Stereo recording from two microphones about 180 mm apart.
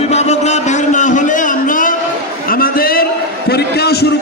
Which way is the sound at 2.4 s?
50° left (ahead or behind).